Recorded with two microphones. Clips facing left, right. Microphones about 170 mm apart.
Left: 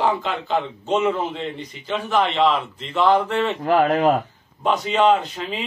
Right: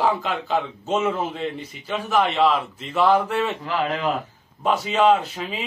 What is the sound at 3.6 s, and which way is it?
Speech, 50° left (ahead or behind).